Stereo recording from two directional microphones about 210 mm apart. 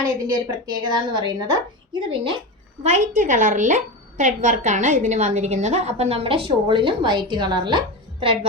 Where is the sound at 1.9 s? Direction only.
25° right (ahead or behind).